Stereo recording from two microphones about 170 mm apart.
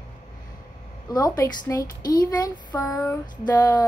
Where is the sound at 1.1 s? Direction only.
20° left (ahead or behind).